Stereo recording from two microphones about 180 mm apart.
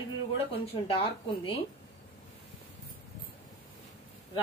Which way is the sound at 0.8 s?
30° left (ahead or behind).